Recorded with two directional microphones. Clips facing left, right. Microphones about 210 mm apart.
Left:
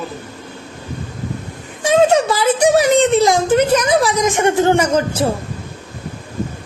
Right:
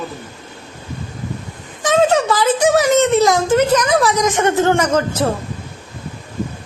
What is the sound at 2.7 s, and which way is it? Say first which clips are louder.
Speech: left 1 dB; 30° left (ahead or behind).